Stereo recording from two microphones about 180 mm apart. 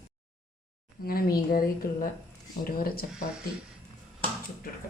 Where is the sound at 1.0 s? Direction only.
55° left (ahead or behind).